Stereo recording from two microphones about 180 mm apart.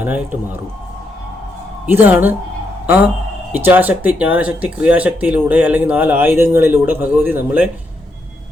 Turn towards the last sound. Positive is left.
turn(degrees=-10)  # may be behind; listen again after turning